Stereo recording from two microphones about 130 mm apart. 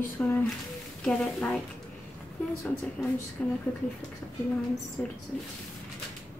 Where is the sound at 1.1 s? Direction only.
5° left (ahead or behind).